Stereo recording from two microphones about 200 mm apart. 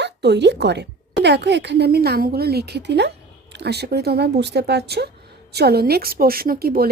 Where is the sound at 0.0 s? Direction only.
60° right (ahead or behind).